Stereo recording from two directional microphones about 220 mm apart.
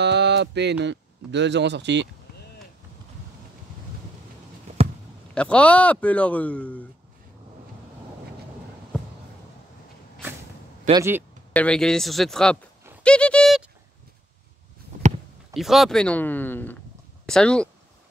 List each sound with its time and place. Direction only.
0.0 s speech: 50° right (ahead or behind)
5.3 s speech: 5° left (ahead or behind)
10.9 s speech: 10° right (ahead or behind)
11.5 s speech: 5° left (ahead or behind)
13.0 s a sound: 5° left (ahead or behind)
15.5 s speech: centre (ahead or behind)